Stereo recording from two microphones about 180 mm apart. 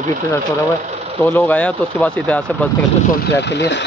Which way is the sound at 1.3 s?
10° left (ahead or behind).